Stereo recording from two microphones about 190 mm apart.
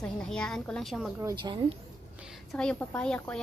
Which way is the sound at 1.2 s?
25° right (ahead or behind).